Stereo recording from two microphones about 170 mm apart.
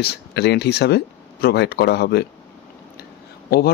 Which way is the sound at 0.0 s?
75° left (ahead or behind).